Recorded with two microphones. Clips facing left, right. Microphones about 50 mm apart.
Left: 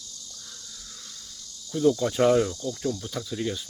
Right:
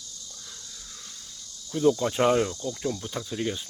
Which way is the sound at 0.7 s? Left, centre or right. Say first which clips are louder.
Even; centre.